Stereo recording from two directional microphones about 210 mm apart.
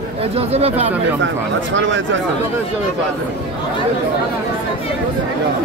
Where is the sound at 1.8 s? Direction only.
60° right (ahead or behind).